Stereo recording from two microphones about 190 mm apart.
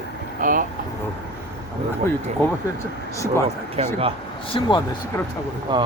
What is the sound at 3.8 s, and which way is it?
Speech, 30° right (ahead or behind).